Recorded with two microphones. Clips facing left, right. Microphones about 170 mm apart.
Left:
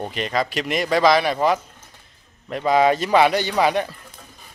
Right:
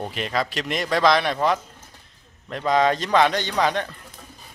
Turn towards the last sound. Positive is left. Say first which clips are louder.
# left 3 dB
turn(degrees=10)  # may be behind; listen again after turning